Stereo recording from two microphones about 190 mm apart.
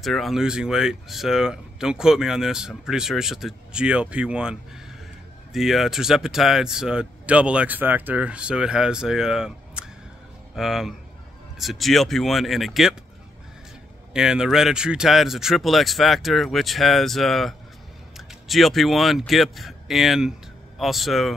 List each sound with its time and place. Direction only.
0.0 s speech: centre (ahead or behind)
14.1 s speech: 5° right (ahead or behind)